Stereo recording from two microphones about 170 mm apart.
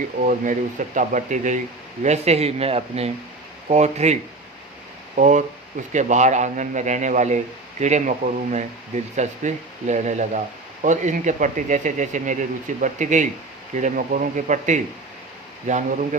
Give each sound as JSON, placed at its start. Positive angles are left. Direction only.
{"t": 0.2, "sound": "speech", "side_deg": -50}